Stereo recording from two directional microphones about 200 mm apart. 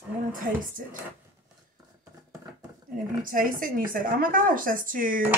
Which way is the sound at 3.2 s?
45° right (ahead or behind).